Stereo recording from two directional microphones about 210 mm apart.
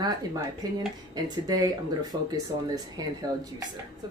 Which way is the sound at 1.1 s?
20° right (ahead or behind).